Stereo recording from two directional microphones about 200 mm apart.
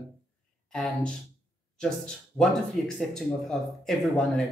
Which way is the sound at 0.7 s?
5° left (ahead or behind).